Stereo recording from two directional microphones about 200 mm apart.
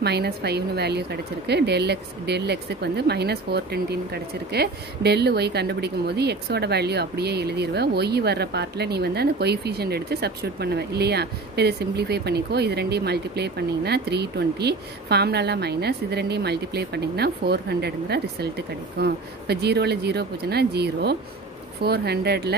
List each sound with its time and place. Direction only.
0.0 s speech: 55° right (ahead or behind)